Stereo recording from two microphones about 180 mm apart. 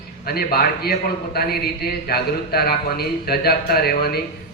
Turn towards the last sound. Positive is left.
turn(degrees=60)  # may be behind; listen again after turning